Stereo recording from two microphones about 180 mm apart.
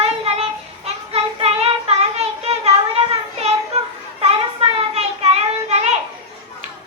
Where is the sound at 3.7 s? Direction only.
35° right (ahead or behind).